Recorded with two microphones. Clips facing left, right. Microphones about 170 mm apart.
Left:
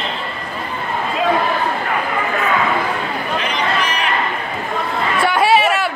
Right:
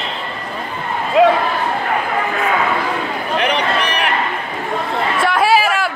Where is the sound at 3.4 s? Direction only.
65° right (ahead or behind).